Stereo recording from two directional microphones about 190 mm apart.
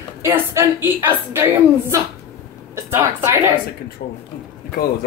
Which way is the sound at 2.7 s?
15° right (ahead or behind).